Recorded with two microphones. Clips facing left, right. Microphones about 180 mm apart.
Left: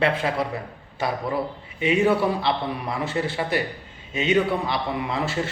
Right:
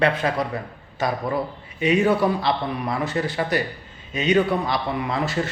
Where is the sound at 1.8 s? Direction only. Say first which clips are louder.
Right 1 dB; 25° left (ahead or behind).